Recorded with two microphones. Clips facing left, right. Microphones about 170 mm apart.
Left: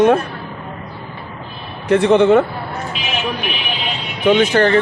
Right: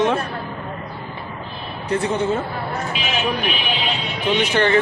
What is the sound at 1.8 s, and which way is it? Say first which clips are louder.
Speech: left 9 dB; 80° left.